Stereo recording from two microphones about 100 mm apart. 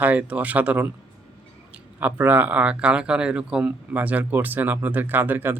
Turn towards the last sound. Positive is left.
turn(degrees=-20)  # may be behind; listen again after turning